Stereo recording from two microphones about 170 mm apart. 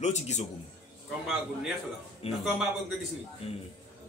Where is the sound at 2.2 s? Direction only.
35° left (ahead or behind).